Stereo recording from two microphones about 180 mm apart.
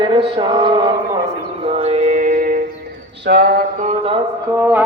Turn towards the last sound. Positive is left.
turn(degrees=-10)  # may be behind; listen again after turning